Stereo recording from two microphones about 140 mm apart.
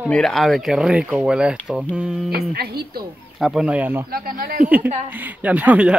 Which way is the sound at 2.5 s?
90° right.